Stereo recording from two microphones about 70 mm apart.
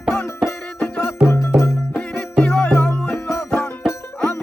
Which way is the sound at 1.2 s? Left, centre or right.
Left.